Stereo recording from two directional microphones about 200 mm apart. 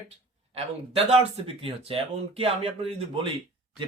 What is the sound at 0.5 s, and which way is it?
Speech, 30° right (ahead or behind).